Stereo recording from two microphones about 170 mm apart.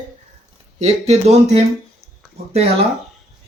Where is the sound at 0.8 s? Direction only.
40° right (ahead or behind).